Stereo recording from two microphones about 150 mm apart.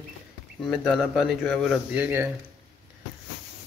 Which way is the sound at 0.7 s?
Centre (ahead or behind).